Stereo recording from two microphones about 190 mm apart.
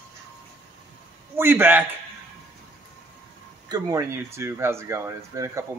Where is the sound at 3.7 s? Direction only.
15° right (ahead or behind).